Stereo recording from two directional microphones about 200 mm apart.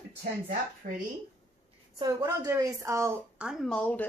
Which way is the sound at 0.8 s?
40° right (ahead or behind).